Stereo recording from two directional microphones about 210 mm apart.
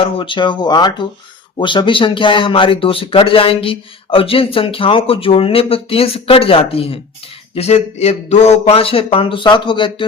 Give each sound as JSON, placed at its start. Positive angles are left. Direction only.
{"t": 0.0, "sound": "speech", "side_deg": 25}